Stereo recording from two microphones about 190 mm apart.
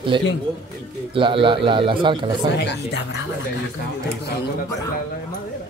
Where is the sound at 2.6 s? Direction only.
65° left (ahead or behind).